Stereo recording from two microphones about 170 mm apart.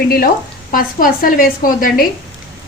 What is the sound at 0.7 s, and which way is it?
Speech, 55° left (ahead or behind).